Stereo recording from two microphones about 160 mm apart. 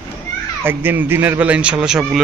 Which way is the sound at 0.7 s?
15° right (ahead or behind).